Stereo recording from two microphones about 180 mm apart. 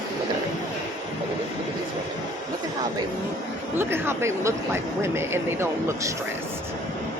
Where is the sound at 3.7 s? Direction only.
15° right (ahead or behind).